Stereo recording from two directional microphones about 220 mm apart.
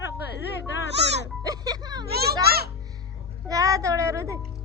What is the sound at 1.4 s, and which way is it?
Music, 15° right (ahead or behind).